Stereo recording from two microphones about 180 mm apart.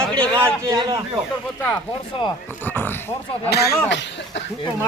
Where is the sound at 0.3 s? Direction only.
15° right (ahead or behind).